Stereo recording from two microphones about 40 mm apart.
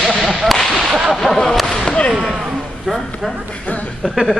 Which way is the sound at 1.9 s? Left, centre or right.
Left.